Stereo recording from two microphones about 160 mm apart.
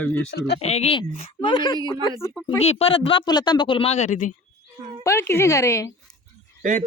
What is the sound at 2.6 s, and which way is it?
Speech, 40° left (ahead or behind).